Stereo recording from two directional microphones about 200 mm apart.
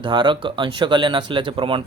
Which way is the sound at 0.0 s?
25° right (ahead or behind).